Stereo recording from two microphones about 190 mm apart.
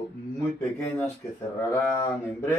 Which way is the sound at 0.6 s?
15° left (ahead or behind).